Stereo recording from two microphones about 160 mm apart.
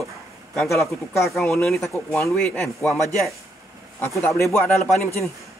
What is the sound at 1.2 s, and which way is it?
Speech, centre (ahead or behind).